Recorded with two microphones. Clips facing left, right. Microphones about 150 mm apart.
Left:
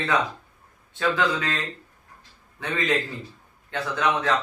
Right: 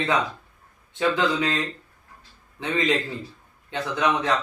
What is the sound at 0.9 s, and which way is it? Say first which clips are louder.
Speech: right 2 dB; 20° right (ahead or behind).